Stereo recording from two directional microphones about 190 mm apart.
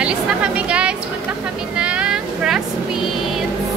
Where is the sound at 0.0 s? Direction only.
5° right (ahead or behind).